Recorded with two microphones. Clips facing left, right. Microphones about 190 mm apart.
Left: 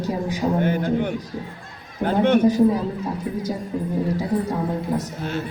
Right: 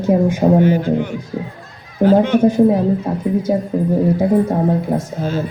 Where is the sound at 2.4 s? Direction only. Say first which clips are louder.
Right 5 dB; 55° right (ahead or behind).